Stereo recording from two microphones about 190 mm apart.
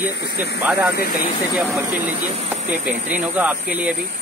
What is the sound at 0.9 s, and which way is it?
Speech, 50° left (ahead or behind).